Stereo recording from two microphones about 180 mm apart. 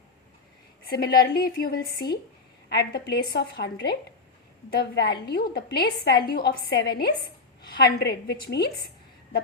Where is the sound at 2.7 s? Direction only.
65° left (ahead or behind).